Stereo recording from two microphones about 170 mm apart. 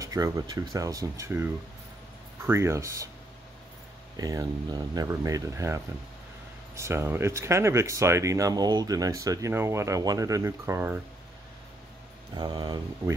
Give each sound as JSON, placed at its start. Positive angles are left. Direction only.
{"t": 0.0, "sound": "speech", "side_deg": -20}
{"t": 4.2, "sound": "speech", "side_deg": -20}
{"t": 12.4, "sound": "speech", "side_deg": -25}